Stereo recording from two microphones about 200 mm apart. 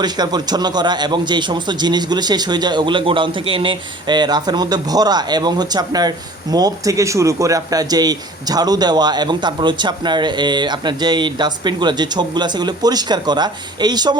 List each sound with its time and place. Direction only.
0.0 s a man's voice: 20° right (ahead or behind)